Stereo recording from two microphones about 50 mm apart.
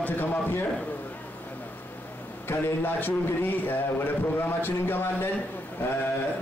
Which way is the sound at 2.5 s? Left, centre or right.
Left.